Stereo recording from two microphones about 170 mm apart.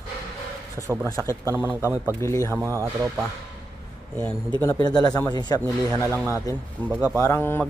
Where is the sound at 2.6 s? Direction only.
15° right (ahead or behind).